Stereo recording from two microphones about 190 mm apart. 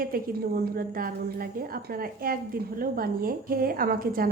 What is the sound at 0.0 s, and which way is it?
A woman's voice, 50° right (ahead or behind).